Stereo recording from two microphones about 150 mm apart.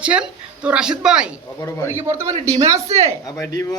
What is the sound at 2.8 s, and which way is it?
Speech, 45° right (ahead or behind).